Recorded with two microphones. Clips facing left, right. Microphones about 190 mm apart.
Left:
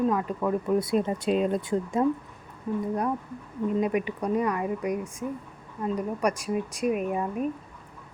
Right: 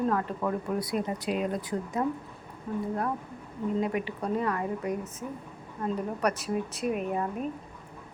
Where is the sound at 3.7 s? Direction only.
20° left (ahead or behind).